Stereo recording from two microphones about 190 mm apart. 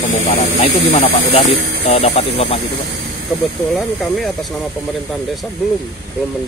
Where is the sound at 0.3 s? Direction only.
35° left (ahead or behind).